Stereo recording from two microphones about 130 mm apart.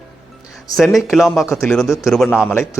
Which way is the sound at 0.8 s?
Centre (ahead or behind).